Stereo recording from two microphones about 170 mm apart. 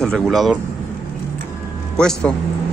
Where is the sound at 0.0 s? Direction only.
Centre (ahead or behind).